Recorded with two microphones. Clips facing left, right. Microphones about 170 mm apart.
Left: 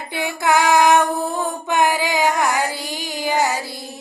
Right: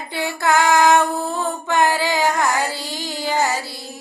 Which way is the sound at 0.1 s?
15° left (ahead or behind).